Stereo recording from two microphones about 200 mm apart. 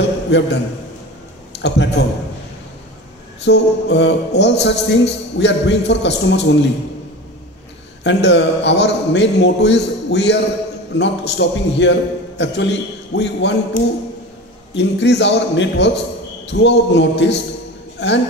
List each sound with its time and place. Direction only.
1.6 s speech: 60° left (ahead or behind)
3.4 s speech: 60° left (ahead or behind)
8.0 s speech: 60° left (ahead or behind)